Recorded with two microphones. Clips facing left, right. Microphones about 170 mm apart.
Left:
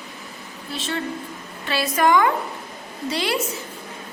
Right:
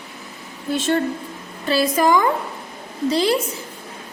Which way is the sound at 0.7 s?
45° right (ahead or behind).